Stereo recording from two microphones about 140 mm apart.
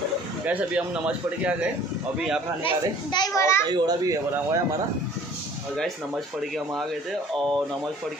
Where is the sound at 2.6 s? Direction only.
30° left (ahead or behind).